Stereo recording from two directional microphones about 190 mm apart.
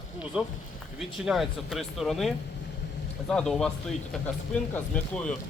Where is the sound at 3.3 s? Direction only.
5° left (ahead or behind).